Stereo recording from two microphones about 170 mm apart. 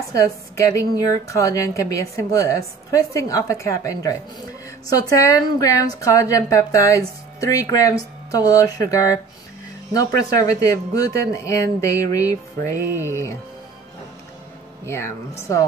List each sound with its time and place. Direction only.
0.1 s a woman's voice: 20° left (ahead or behind)
14.9 s speech: 15° left (ahead or behind)